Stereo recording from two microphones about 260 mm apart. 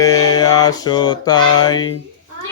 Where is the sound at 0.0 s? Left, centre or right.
Centre.